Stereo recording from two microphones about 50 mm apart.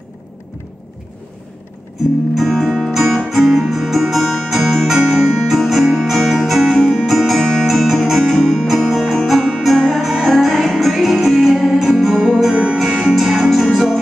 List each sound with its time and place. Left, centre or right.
2.3 s music: centre